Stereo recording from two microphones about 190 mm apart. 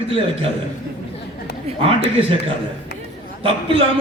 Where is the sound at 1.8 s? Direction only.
30° right (ahead or behind).